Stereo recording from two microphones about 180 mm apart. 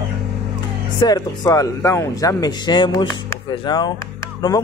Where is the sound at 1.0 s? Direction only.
20° left (ahead or behind).